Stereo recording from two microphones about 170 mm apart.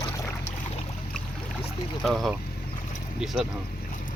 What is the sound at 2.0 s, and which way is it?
Speech, centre (ahead or behind).